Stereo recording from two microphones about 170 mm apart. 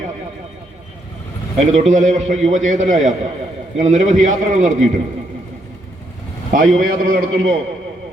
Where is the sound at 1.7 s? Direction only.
45° right (ahead or behind).